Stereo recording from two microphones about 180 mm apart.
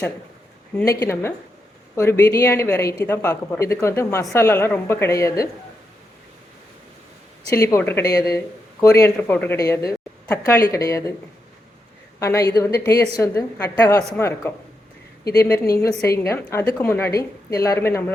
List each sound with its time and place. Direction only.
0.9 s speech: 15° left (ahead or behind)
7.5 s speech: 15° left (ahead or behind)
12.2 s speech: 15° left (ahead or behind)
15.2 s speech: 60° left (ahead or behind)
15.7 s speech: 15° left (ahead or behind)